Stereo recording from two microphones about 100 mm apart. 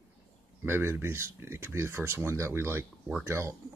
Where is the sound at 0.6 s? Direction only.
25° right (ahead or behind).